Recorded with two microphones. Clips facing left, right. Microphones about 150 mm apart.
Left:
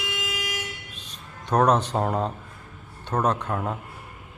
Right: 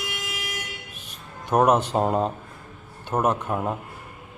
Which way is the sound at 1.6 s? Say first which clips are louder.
Right 2 dB; 20° right (ahead or behind).